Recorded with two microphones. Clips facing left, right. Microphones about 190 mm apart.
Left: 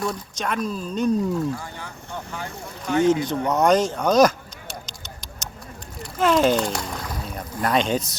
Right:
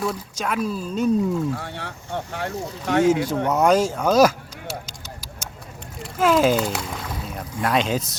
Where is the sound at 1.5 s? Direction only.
70° right (ahead or behind).